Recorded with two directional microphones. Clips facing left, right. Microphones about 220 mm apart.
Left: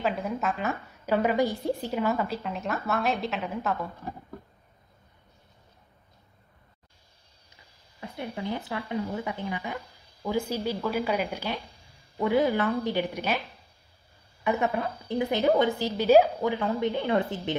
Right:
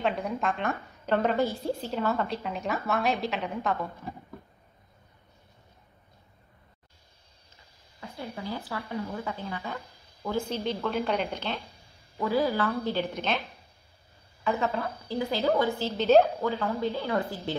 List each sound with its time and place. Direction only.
0.0 s a woman's voice: centre (ahead or behind)
8.4 s speech: 20° left (ahead or behind)
14.4 s speech: 15° left (ahead or behind)